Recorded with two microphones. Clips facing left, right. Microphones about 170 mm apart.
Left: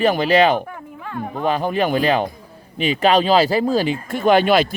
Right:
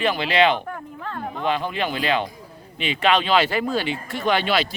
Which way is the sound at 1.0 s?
10° left (ahead or behind).